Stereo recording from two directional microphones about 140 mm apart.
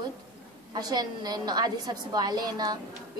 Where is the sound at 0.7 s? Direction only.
30° right (ahead or behind).